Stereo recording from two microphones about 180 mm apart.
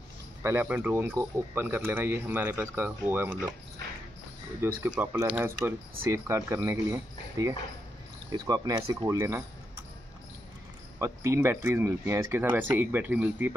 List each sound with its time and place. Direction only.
0.4 s speech: 15° right (ahead or behind)
4.6 s speech: 10° right (ahead or behind)
11.0 s speech: 15° right (ahead or behind)